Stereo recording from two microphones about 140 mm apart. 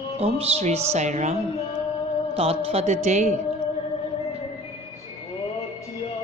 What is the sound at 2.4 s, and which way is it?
Speech, 45° right (ahead or behind).